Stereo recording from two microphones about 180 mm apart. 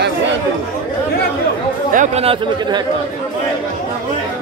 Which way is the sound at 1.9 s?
45° right (ahead or behind).